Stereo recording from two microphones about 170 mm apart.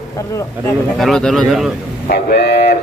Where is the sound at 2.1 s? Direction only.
75° left (ahead or behind).